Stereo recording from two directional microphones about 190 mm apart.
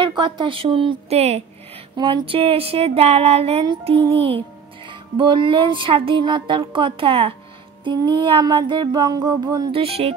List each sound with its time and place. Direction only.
0.0 s music: 25° right (ahead or behind)
2.0 s a sound: 25° right (ahead or behind)
4.8 s music: 25° right (ahead or behind)